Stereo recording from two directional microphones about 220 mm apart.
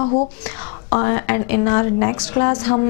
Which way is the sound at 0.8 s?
20° left (ahead or behind).